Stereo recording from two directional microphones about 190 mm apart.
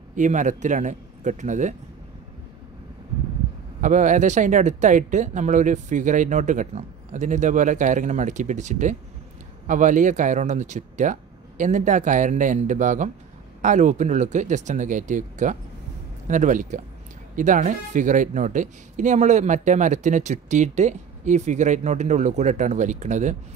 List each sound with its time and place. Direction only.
0.1 s speech: 40° right (ahead or behind)
3.8 s speech: 40° right (ahead or behind)